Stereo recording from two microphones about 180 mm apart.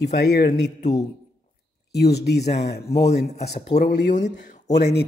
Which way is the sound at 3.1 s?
65° left (ahead or behind).